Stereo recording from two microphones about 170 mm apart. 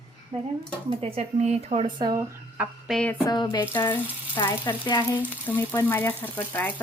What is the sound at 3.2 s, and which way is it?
Speech, 25° left (ahead or behind).